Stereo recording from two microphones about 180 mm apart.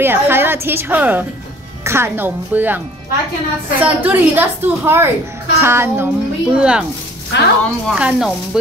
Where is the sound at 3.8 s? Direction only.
10° right (ahead or behind).